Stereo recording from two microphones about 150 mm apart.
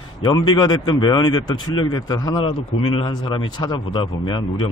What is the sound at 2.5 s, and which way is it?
Speech, 40° left (ahead or behind).